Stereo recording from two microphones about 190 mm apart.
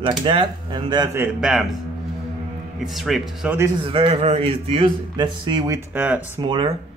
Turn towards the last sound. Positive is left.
turn(degrees=-25)  # may be behind; listen again after turning